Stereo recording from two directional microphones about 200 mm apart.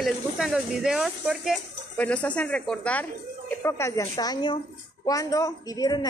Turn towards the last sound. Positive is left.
turn(degrees=20)  # may be behind; listen again after turning